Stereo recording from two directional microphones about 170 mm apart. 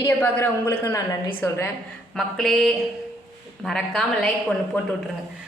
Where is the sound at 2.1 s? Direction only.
Centre (ahead or behind).